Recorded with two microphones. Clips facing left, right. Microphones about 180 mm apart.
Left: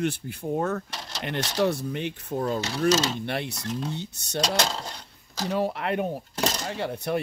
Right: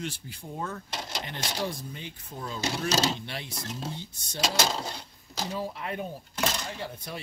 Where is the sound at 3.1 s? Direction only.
60° left (ahead or behind).